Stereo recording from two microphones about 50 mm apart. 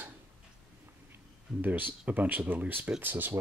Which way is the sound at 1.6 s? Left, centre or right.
Right.